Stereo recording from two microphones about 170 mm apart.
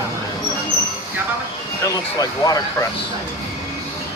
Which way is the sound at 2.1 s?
20° left (ahead or behind).